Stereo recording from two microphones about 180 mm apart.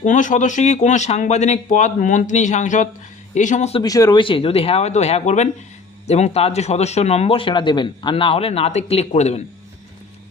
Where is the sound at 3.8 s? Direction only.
20° left (ahead or behind).